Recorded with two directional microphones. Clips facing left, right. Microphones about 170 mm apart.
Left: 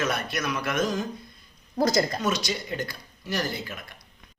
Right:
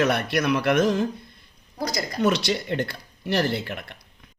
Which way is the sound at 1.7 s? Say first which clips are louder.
Left 6 dB; 45° left (ahead or behind).